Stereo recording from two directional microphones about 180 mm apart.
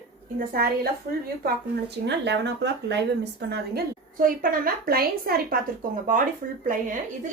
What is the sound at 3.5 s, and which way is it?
A woman's voice, 55° right (ahead or behind).